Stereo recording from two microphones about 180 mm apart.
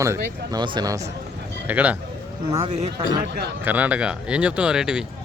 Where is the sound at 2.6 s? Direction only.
40° right (ahead or behind).